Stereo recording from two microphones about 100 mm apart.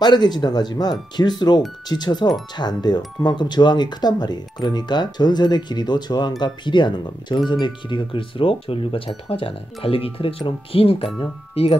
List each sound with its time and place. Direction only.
0.0 s speech: 45° left (ahead or behind); by 11.1 s 70° left (ahead or behind)
11.6 s speech: 80° left